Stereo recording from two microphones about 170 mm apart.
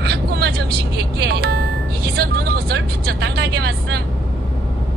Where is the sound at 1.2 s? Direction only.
65° right (ahead or behind).